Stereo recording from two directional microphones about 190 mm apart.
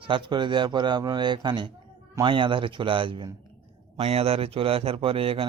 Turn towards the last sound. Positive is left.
turn(degrees=-30)  # may be behind; listen again after turning